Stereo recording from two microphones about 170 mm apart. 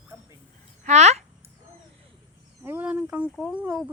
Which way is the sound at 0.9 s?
40° right (ahead or behind).